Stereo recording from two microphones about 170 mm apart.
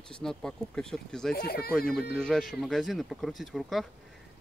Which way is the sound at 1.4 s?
65° left (ahead or behind).